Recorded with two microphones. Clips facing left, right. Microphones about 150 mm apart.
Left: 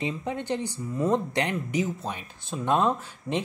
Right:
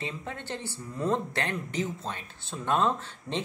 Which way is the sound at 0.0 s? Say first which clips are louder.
Left 7 dB; 15° left (ahead or behind).